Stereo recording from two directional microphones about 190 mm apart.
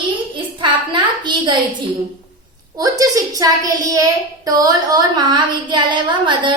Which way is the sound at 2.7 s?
20° right (ahead or behind).